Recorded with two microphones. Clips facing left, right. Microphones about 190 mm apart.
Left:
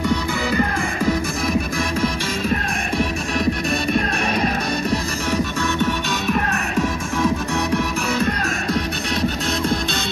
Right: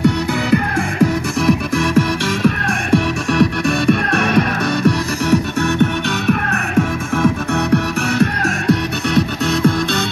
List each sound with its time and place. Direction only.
0.0 s music: 70° right (ahead or behind)